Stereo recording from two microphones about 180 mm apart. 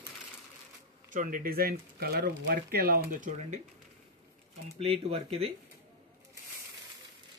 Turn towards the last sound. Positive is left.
turn(degrees=-35)  # may be behind; listen again after turning